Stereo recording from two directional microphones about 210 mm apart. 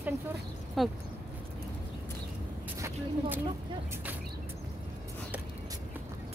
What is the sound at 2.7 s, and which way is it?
Speech, 15° right (ahead or behind).